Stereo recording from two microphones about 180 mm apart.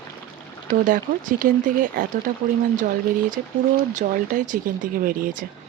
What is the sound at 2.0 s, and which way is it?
Speech, 50° right (ahead or behind).